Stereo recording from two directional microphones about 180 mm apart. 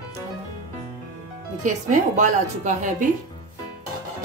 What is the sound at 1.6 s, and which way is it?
Speech, 45° right (ahead or behind).